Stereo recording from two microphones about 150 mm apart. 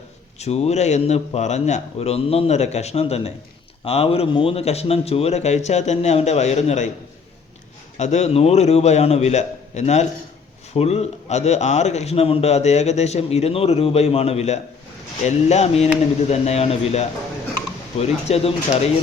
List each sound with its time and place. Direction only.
0.3 s a man's voice: 45° left (ahead or behind)
7.9 s a man's voice: 50° left (ahead or behind)